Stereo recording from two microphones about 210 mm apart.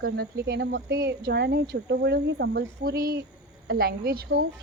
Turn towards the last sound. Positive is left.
turn(degrees=-45)  # may be behind; listen again after turning